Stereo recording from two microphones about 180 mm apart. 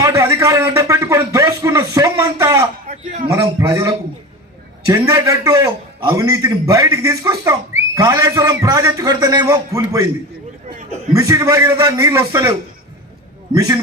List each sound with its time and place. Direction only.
0.0 s speech: 15° right (ahead or behind)
2.8 s a man's voice: 40° right (ahead or behind)
3.2 s a man's voice: 20° right (ahead or behind)
11.1 s a man's voice: 15° right (ahead or behind)